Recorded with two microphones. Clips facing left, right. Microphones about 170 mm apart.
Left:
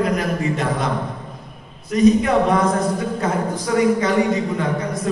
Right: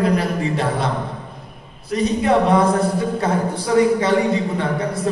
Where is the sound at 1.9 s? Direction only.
30° right (ahead or behind).